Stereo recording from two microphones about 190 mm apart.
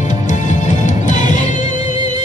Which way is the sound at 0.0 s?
40° left (ahead or behind).